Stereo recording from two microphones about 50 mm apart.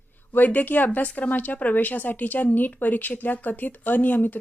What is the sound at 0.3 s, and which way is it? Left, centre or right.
Speech, left.